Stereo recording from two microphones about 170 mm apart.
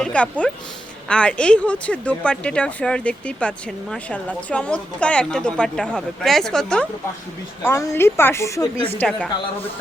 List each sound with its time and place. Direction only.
0.0 s a woman's voice: 5° left (ahead or behind)
7.6 s speech: 15° left (ahead or behind)
9.0 s a woman's voice: 5° left (ahead or behind)